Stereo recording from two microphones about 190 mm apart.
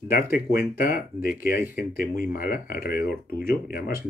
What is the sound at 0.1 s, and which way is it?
Speech, 50° left (ahead or behind).